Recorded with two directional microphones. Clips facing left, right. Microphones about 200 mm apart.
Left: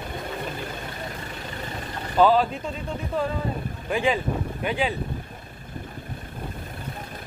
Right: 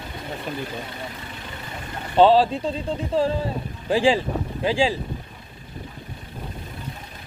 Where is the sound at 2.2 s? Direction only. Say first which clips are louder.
Right 4 dB; 30° right (ahead or behind).